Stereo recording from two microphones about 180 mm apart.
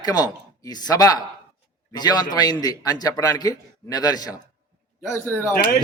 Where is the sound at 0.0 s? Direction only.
20° left (ahead or behind).